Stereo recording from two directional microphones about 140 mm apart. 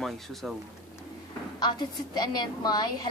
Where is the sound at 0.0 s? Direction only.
Centre (ahead or behind).